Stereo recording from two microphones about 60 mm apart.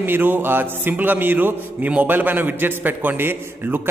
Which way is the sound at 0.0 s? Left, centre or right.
Right.